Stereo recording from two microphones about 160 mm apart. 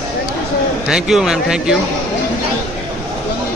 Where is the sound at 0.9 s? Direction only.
5° right (ahead or behind).